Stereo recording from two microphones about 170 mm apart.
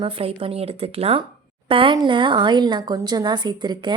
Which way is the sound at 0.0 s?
30° right (ahead or behind).